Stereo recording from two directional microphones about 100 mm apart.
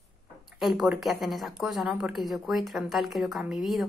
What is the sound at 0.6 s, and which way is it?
Speech, centre (ahead or behind).